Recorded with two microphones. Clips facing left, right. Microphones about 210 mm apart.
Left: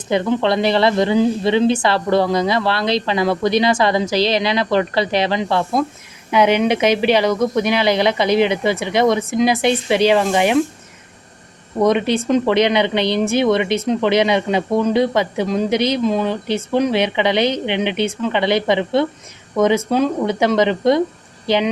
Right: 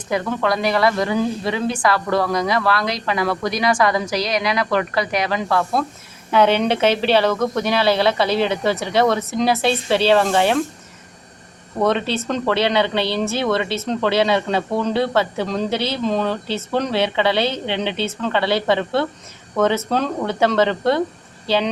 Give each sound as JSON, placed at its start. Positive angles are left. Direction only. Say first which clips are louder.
{"t": 0.1, "sound": "speech", "louder": "left 4 dB", "side_deg": 25}
{"t": 6.3, "sound": "speech", "louder": "left 1 dB", "side_deg": 10}
{"t": 11.8, "sound": "speech", "louder": "left 4 dB", "side_deg": 15}